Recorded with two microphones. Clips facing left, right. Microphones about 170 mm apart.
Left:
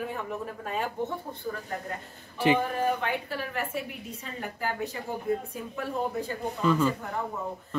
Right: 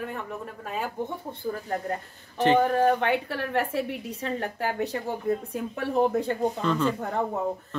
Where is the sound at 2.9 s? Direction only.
70° right (ahead or behind).